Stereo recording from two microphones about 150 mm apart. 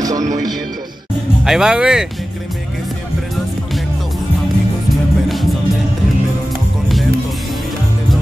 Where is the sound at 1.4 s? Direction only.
5° right (ahead or behind).